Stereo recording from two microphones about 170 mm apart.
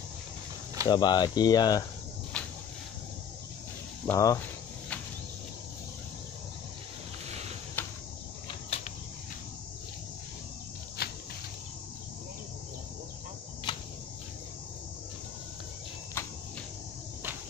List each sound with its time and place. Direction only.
0.8 s speech: 25° left (ahead or behind)
2.3 s a sound: 5° left (ahead or behind)
4.1 s speech: 20° left (ahead or behind)
7.2 s a sound: 40° right (ahead or behind)
7.8 s cricket: 10° left (ahead or behind)
8.5 s cricket: 35° left (ahead or behind)
11.0 s cricket: 65° left (ahead or behind)
13.7 s a sound: 25° left (ahead or behind)
16.2 s cricket: 15° left (ahead or behind)